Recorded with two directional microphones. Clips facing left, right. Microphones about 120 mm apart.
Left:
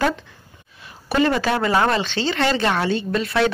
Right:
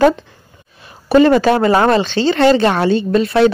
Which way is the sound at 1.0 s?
35° right (ahead or behind).